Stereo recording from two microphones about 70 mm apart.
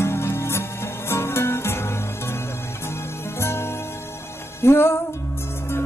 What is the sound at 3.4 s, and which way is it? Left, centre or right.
Music, left.